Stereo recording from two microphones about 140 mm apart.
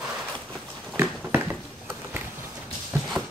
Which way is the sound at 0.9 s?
15° right (ahead or behind).